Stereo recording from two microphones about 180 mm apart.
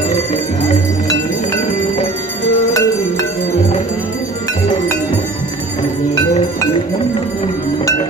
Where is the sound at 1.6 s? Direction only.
45° left (ahead or behind).